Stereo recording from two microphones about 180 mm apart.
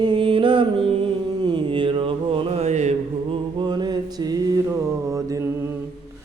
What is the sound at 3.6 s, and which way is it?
Mantra, 25° right (ahead or behind).